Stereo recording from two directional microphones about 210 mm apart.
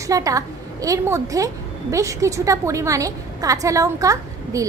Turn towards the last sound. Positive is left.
turn(degrees=-15)  # may be behind; listen again after turning